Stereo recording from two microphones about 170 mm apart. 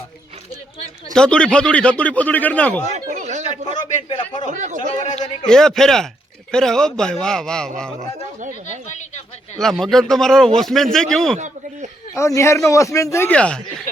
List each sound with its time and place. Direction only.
1.1 s speech: 5° left (ahead or behind)
3.1 s a sound: 45° right (ahead or behind)
3.8 s a man's voice: 45° left (ahead or behind)
4.4 s speech: 45° right (ahead or behind)
5.0 s a man's voice: 45° left (ahead or behind)
5.5 s a man's voice: 5° left (ahead or behind)
9.6 s a man's voice: centre (ahead or behind)
11.3 s a sound: 45° right (ahead or behind)
12.1 s speech: 15° left (ahead or behind)